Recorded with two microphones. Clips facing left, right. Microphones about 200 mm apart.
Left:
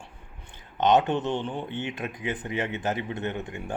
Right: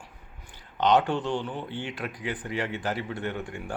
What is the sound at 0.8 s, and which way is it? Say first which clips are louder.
Speech: left 1 dB; 20° left (ahead or behind).